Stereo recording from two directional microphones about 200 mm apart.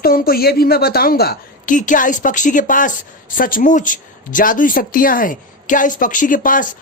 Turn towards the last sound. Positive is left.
turn(degrees=40)  # may be behind; listen again after turning